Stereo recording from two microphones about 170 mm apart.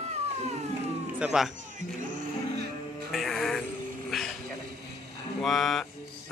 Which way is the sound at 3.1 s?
Centre (ahead or behind).